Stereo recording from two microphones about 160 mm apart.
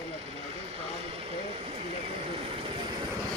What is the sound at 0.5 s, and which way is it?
Vehicle, 35° right (ahead or behind).